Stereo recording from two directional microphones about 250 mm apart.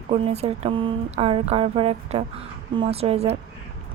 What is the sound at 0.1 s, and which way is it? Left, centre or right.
Speech, right.